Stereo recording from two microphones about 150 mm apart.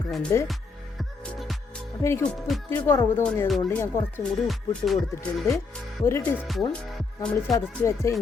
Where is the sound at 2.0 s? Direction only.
20° left (ahead or behind).